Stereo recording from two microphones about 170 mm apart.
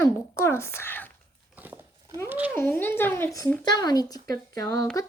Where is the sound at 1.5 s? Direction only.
10° right (ahead or behind).